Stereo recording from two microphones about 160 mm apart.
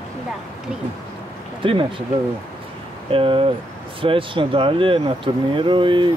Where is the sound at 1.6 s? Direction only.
30° right (ahead or behind).